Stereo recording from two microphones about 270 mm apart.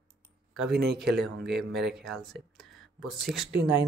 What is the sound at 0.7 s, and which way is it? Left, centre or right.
Speech, right.